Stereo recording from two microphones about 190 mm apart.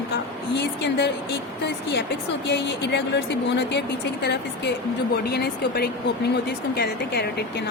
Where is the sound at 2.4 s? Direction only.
65° left (ahead or behind).